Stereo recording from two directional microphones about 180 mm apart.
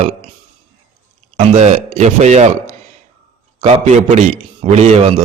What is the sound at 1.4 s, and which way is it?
A man's voice, 40° right (ahead or behind).